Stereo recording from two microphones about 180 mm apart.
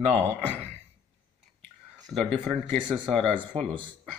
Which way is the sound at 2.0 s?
Centre (ahead or behind).